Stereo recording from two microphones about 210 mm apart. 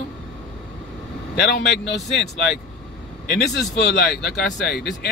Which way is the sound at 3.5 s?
50° left (ahead or behind).